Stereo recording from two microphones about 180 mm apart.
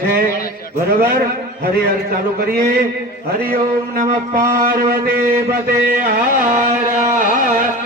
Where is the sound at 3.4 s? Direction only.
50° right (ahead or behind).